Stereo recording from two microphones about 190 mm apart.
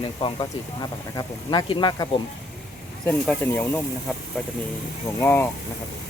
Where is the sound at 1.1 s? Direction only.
20° left (ahead or behind).